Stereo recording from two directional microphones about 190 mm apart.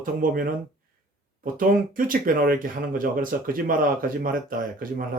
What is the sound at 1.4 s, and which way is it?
Speech, 45° right (ahead or behind).